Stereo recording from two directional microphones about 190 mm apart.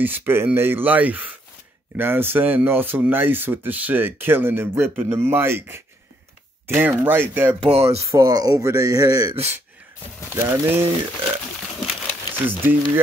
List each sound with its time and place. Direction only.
0.0 s speech: 10° right (ahead or behind)
7.6 s speech: 30° right (ahead or behind)
8.0 s speech: 20° right (ahead or behind)
11.8 s a sound: centre (ahead or behind)